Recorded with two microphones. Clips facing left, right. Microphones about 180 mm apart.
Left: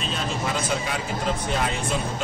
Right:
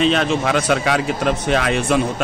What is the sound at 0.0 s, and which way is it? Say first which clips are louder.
Speech: right 11 dB; 80° right.